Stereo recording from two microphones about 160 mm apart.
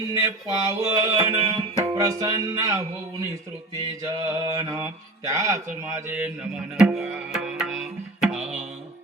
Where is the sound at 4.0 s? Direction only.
20° right (ahead or behind).